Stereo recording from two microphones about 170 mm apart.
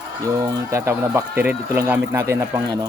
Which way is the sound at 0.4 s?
15° right (ahead or behind).